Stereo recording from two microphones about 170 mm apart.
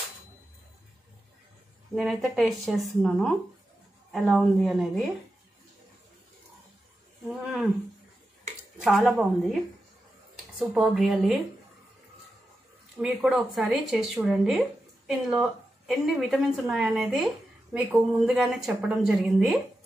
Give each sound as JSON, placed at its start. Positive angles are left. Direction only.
{"t": 2.0, "sound": "speech", "side_deg": 0}
{"t": 8.8, "sound": "speech", "side_deg": 0}
{"t": 13.0, "sound": "speech", "side_deg": 0}